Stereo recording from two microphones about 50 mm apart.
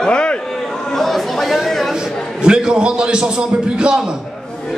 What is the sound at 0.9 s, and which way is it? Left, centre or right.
Speech, centre.